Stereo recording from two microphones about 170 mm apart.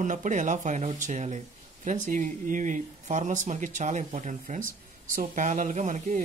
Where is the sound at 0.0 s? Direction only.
50° right (ahead or behind).